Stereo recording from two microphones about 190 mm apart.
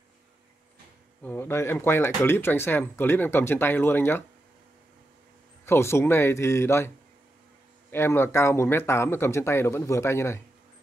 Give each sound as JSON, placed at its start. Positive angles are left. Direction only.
{"t": 1.2, "sound": "speech", "side_deg": 10}
{"t": 5.7, "sound": "speech", "side_deg": 15}
{"t": 7.9, "sound": "speech", "side_deg": 15}